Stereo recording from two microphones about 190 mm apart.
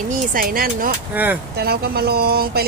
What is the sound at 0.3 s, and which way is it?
Speech, 50° right (ahead or behind).